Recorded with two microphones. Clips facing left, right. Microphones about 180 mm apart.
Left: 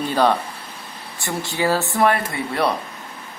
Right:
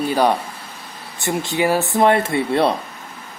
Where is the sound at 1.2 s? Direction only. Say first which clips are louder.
Right 4 dB; 20° right (ahead or behind).